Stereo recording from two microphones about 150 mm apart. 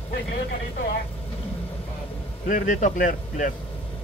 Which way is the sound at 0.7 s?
90° left.